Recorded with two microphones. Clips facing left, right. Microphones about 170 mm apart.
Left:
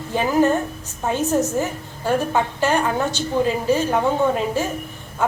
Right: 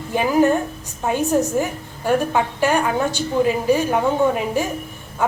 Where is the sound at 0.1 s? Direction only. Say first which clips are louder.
Right 1 dB; 15° right (ahead or behind).